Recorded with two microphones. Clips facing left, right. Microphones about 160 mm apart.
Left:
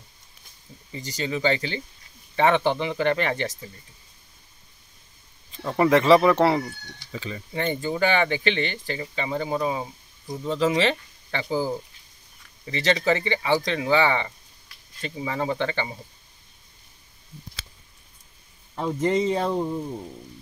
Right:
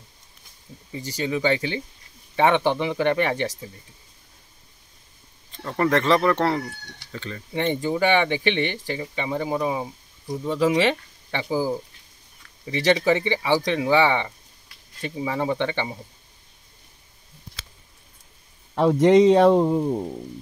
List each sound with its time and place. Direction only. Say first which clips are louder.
0.9 s speech: right 3 dB; 5° right (ahead or behind)
5.5 s speech: left 2 dB; 10° left (ahead or behind)
8.7 s speech: right 1 dB; 10° right (ahead or behind)
18.8 s speech: right 8 dB; 85° right